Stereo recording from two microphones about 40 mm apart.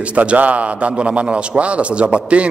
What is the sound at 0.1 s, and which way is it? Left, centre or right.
Speech, right.